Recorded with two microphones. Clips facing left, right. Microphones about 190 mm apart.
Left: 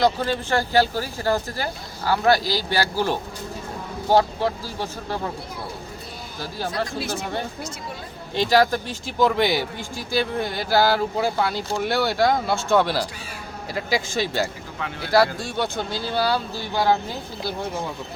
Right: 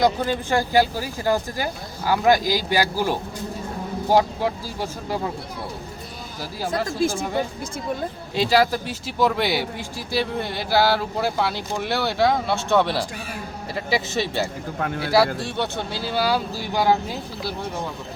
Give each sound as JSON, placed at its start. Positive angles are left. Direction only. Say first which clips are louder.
{"t": 0.0, "sound": "speech", "louder": "even", "side_deg": -15}
{"t": 6.8, "sound": "speech", "louder": "right 5 dB", "side_deg": -50}
{"t": 8.4, "sound": "speech", "louder": "even", "side_deg": -5}
{"t": 15.5, "sound": "speech", "louder": "left 1 dB", "side_deg": -5}